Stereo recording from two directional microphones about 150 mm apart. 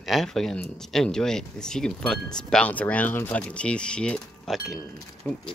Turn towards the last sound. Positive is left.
turn(degrees=10)  # may be behind; listen again after turning